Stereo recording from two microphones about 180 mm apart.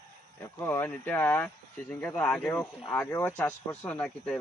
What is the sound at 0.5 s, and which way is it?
Speech, 15° left (ahead or behind).